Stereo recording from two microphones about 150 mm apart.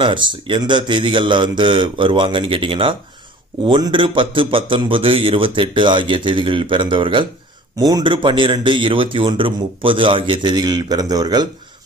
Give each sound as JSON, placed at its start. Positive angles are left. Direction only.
{"t": 0.0, "sound": "a man's voice", "side_deg": -30}